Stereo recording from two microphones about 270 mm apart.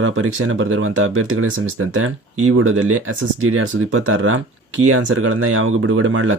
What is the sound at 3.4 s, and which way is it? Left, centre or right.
Speech, right.